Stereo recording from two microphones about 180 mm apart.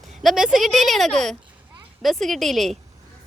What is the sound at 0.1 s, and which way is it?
A woman's voice, centre (ahead or behind).